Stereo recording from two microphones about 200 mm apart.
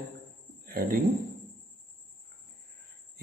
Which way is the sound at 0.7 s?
50° right (ahead or behind).